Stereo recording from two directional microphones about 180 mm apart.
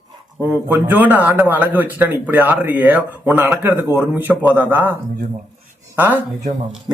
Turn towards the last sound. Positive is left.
turn(degrees=-20)  # may be behind; listen again after turning